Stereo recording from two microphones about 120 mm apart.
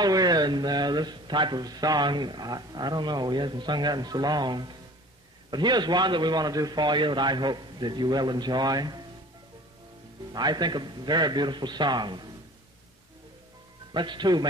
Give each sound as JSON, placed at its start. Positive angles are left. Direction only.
{"t": 0.0, "sound": "speech", "side_deg": -35}
{"t": 10.3, "sound": "speech", "side_deg": -35}
{"t": 13.9, "sound": "speech", "side_deg": -40}